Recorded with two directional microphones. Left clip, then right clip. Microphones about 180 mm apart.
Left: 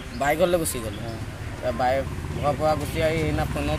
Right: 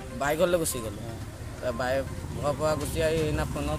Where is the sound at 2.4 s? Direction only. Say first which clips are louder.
Left 4 dB; 20° right (ahead or behind).